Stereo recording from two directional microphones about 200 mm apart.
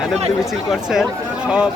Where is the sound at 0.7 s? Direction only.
Centre (ahead or behind).